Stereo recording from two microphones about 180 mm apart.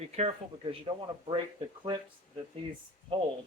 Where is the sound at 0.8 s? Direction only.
25° right (ahead or behind).